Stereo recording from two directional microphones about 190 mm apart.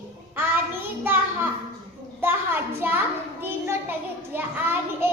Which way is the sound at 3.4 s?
10° right (ahead or behind).